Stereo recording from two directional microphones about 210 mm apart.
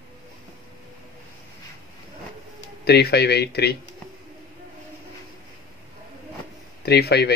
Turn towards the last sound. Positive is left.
turn(degrees=50)  # may be behind; listen again after turning